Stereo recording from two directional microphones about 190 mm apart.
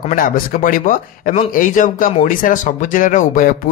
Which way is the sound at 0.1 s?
45° left (ahead or behind).